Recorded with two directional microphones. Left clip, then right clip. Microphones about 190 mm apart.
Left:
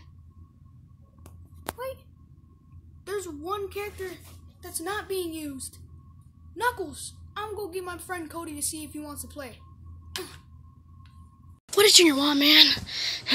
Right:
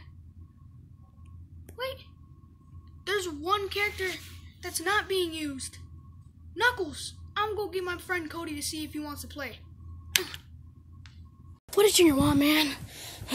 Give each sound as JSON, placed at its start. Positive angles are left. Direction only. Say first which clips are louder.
{"t": 3.0, "sound": "a woman's voice", "louder": "right 3 dB", "side_deg": 40}
{"t": 11.7, "sound": "speech", "louder": "left 4 dB", "side_deg": 0}
{"t": 12.8, "sound": "a sound", "louder": "left 14 dB", "side_deg": 5}